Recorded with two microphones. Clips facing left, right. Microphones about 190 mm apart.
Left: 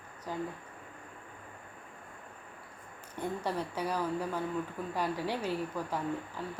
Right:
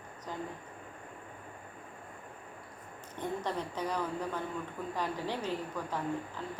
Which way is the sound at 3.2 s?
10° left (ahead or behind).